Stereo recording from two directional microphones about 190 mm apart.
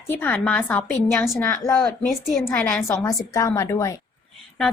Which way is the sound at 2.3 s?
5° left (ahead or behind).